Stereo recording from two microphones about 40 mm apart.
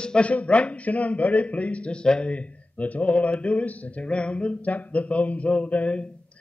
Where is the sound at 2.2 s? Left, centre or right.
Left.